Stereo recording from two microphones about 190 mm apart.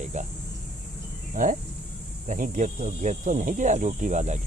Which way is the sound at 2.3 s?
40° right (ahead or behind).